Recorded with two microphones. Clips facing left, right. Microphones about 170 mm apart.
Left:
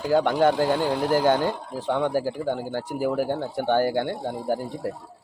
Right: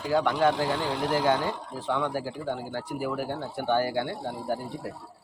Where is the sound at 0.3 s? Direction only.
50° left (ahead or behind).